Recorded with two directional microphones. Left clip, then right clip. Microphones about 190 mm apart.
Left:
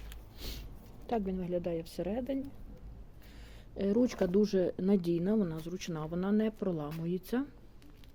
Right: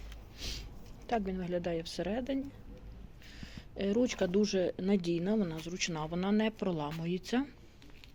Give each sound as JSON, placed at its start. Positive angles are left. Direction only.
{"t": 0.3, "sound": "a sound", "side_deg": 40}
{"t": 1.0, "sound": "a woman's voice", "side_deg": 25}
{"t": 3.4, "sound": "speech", "side_deg": 30}